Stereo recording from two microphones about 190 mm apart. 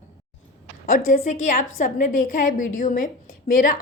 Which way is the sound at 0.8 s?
45° left (ahead or behind).